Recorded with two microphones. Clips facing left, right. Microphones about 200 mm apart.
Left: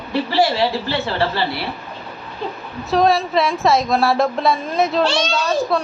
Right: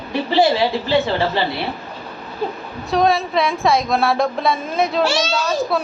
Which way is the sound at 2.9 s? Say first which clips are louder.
Left 1 dB; centre (ahead or behind).